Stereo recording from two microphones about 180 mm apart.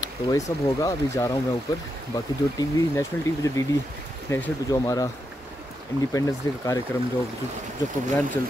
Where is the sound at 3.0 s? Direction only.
15° left (ahead or behind).